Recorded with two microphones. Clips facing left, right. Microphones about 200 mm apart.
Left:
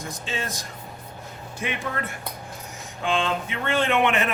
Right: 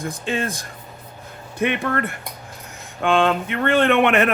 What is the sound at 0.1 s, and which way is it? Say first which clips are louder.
A man's voice: right 5 dB; 55° right (ahead or behind).